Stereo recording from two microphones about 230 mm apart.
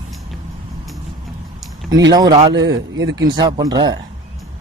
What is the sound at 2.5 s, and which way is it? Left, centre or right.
Speech, right.